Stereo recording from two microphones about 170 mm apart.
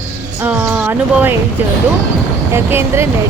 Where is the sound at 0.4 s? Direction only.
10° right (ahead or behind).